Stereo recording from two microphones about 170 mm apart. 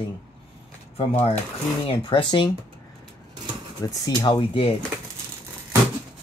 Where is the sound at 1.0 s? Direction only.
35° left (ahead or behind).